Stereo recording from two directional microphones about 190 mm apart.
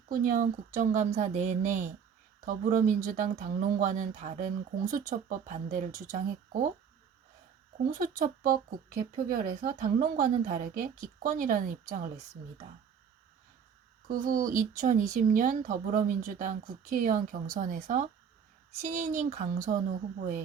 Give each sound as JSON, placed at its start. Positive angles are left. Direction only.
{"t": 0.1, "sound": "a woman's voice", "side_deg": -45}
{"t": 7.9, "sound": "speech", "side_deg": -45}
{"t": 14.1, "sound": "speech", "side_deg": -45}